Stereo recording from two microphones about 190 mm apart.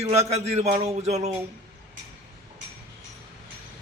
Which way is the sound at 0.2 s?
35° right (ahead or behind).